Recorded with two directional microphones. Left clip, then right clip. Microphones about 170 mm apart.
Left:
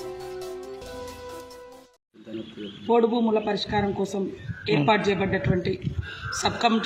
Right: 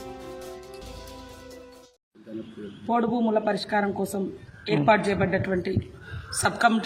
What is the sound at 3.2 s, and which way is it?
A man's voice, 10° right (ahead or behind).